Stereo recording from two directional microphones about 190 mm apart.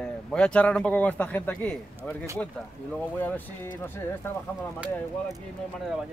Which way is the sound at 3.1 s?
10° left (ahead or behind).